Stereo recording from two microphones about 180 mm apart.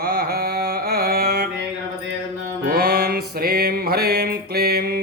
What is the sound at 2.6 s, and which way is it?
Music, 60° right (ahead or behind).